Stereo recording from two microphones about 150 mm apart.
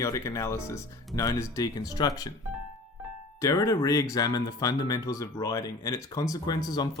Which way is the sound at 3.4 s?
20° left (ahead or behind).